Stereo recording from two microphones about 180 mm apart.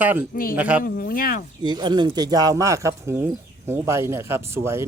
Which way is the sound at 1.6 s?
25° right (ahead or behind).